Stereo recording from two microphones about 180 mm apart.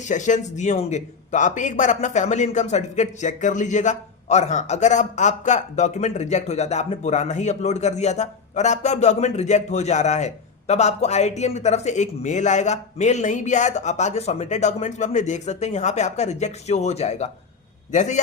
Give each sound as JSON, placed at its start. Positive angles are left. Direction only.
{"t": 0.0, "sound": "a man's voice", "side_deg": 45}